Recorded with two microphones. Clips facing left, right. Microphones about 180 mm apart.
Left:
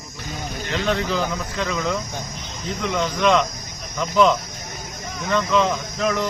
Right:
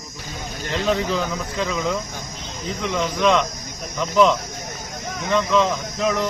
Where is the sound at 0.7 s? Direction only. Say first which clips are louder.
Right 1 dB; 5° right (ahead or behind).